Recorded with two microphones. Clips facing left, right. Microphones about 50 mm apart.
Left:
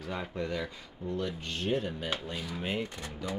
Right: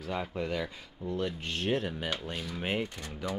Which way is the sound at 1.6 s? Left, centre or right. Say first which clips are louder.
Right 1 dB; right.